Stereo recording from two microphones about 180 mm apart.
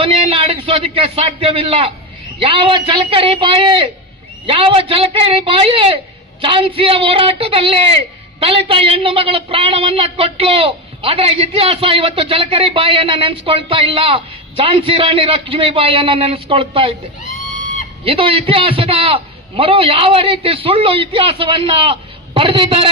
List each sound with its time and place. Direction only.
0.0 s a man's voice: 30° right (ahead or behind)
18.0 s a woman's voice: 30° right (ahead or behind)